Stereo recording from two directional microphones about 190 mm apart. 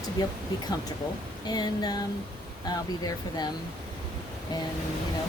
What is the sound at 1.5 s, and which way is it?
Speech, 20° left (ahead or behind).